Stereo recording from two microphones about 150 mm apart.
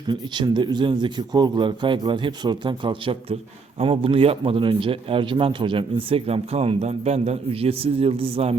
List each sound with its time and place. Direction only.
0.1 s speech: 30° right (ahead or behind)